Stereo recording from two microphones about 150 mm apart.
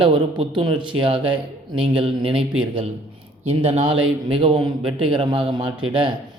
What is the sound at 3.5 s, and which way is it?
Speech, 40° right (ahead or behind).